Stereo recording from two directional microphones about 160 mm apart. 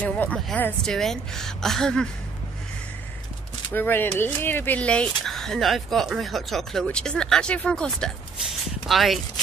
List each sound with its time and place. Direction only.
0.0 s speech: 10° left (ahead or behind)
3.7 s speech: 15° left (ahead or behind)